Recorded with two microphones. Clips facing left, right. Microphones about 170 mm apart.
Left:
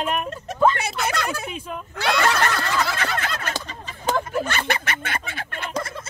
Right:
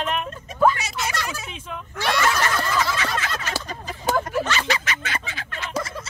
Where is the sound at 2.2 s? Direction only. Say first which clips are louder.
Left 1 dB; 60° left (ahead or behind).